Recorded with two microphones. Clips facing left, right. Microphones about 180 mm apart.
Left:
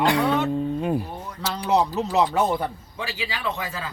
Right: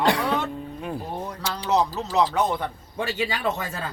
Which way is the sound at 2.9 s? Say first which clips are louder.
Right 5 dB; 50° right (ahead or behind).